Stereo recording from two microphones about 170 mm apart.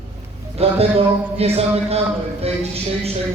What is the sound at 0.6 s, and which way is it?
Speech, 35° right (ahead or behind).